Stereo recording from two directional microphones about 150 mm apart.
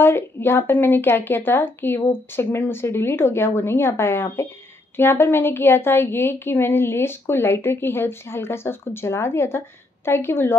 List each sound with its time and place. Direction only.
0.0 s a woman's voice: 15° left (ahead or behind)